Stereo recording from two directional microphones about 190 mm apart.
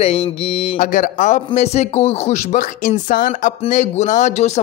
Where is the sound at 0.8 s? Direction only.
45° left (ahead or behind).